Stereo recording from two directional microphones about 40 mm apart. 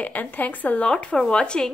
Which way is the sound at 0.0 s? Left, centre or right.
Left.